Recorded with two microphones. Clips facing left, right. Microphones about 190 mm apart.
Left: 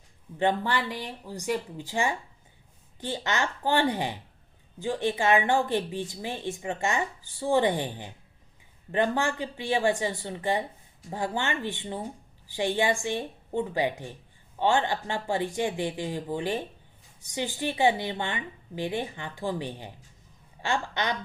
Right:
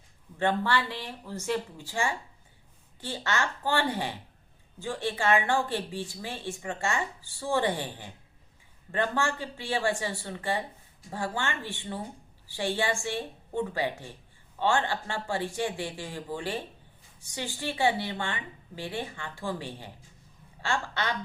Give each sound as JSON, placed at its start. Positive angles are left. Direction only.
{"t": 0.3, "sound": "speech", "side_deg": 15}